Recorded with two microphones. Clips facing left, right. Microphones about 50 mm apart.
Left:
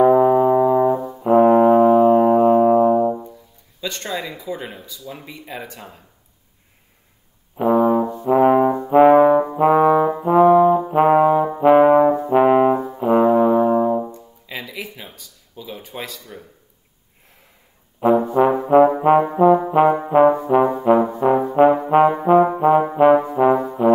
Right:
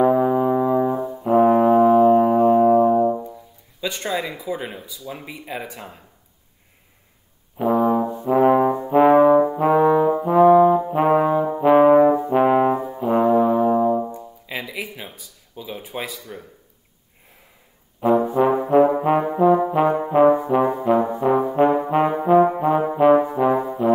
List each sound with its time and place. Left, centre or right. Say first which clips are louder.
0.0 s music: left 4 dB; centre
0.9 s brass instrument: even; centre
1.2 s brass instrument: left 3 dB; centre
3.8 s speech: right 2 dB; centre
7.5 s brass instrument: left 3 dB; centre
9.8 s trombone: left 1 dB; centre
10.2 s brass instrument: left 1 dB; centre
10.9 s trombone: left 4 dB; centre
12.3 s brass instrument: left 3 dB; centre
14.0 s music: right 2 dB; centre
18.3 s trombone: left 2 dB; centre
19.7 s brass instrument: left 3 dB; centre
22.6 s brass instrument: left 4 dB; centre
22.9 s brass instrument: left 2 dB; centre